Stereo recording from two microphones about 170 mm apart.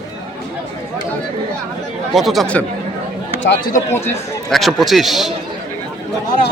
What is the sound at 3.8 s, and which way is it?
Speech, 15° left (ahead or behind).